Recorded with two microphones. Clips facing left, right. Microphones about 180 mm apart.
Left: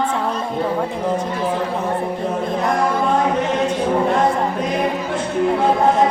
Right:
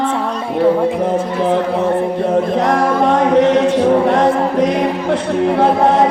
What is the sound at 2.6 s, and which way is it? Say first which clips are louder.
Music: right 5 dB; 75° right (ahead or behind).